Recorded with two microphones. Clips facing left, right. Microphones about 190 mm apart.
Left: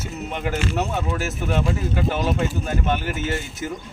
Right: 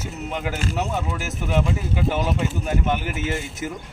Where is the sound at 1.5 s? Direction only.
5° right (ahead or behind).